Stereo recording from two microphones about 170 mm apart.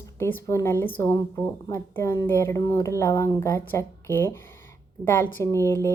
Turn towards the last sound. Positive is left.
turn(degrees=15)  # may be behind; listen again after turning